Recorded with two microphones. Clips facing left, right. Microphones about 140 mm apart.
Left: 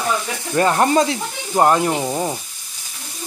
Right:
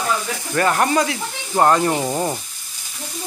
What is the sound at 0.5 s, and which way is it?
Speech, 25° left (ahead or behind).